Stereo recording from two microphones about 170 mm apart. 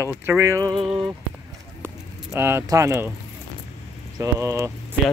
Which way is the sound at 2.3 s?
15° right (ahead or behind).